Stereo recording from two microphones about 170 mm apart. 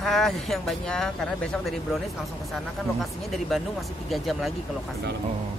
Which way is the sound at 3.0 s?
Centre (ahead or behind).